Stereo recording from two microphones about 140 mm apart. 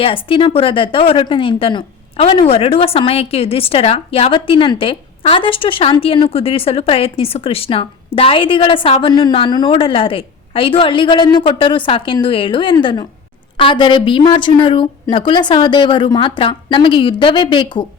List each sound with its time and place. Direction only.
0.0 s speech: 40° left (ahead or behind)